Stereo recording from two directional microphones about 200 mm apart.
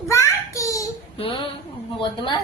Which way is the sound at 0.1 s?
15° left (ahead or behind).